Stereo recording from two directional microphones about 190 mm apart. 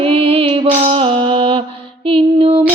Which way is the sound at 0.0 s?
30° right (ahead or behind).